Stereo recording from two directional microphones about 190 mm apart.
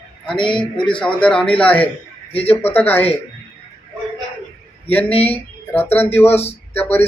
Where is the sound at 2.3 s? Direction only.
30° left (ahead or behind).